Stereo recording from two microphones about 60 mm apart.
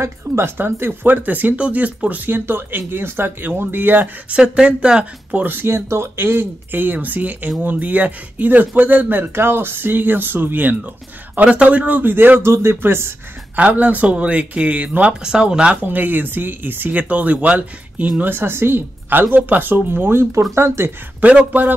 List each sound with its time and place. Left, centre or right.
0.3 s speech: right
0.6 s speech: right
4.3 s speech: centre
5.3 s speech: right
11.3 s speech: right
13.6 s speech: right
15.2 s speech: centre
15.8 s speech: right
16.9 s speech: right
18.2 s speech: right
21.2 s speech: right